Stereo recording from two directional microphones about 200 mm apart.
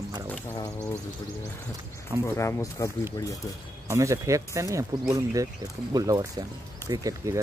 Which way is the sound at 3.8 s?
15° right (ahead or behind).